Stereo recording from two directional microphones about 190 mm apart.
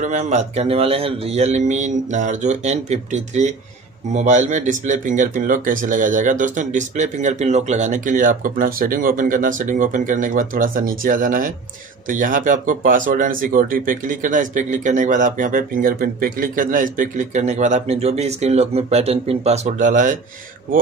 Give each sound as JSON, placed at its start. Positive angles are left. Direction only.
{"t": 0.0, "sound": "speech", "side_deg": -40}